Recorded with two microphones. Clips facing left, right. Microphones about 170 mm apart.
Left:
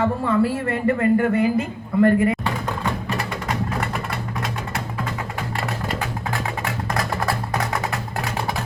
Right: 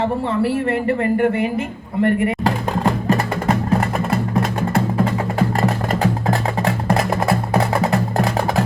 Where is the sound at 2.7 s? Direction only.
45° right (ahead or behind).